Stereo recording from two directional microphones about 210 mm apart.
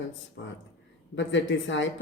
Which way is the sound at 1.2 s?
60° left (ahead or behind).